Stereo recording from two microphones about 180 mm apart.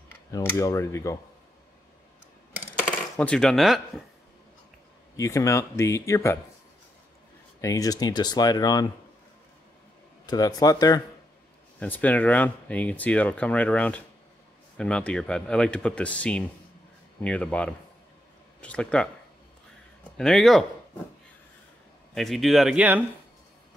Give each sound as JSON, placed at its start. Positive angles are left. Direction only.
{"t": 0.3, "sound": "speech", "side_deg": 15}
{"t": 2.8, "sound": "coin", "side_deg": 5}
{"t": 5.1, "sound": "speech", "side_deg": 15}
{"t": 7.6, "sound": "speech", "side_deg": 20}
{"t": 10.2, "sound": "speech", "side_deg": 20}
{"t": 11.8, "sound": "speech", "side_deg": 10}
{"t": 20.2, "sound": "speech", "side_deg": 5}
{"t": 22.1, "sound": "speech", "side_deg": 0}